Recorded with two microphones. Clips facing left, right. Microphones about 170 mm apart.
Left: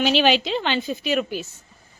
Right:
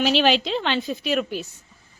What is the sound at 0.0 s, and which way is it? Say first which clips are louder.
A woman's voice: left 1 dB; centre (ahead or behind).